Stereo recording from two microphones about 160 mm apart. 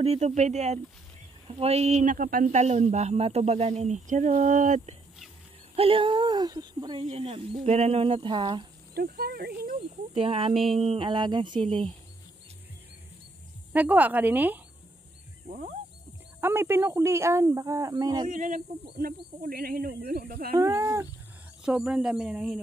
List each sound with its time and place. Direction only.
0.0 s speech: 40° right (ahead or behind); by 2.5 s 60° right (ahead or behind)
2.5 s speech: 45° right (ahead or behind)
5.8 s speech: 35° right (ahead or behind)
8.9 s speech: 75° right (ahead or behind)
9.8 s speech: 35° right (ahead or behind)
13.7 s a woman's voice: 10° right (ahead or behind)
15.4 s speech: 50° right (ahead or behind)
16.3 s speech: 15° right (ahead or behind)
18.3 s speech: 55° right (ahead or behind)
19.4 s speech: 70° right (ahead or behind)
20.5 s speech: 20° right (ahead or behind)
21.6 s speech: 5° right (ahead or behind)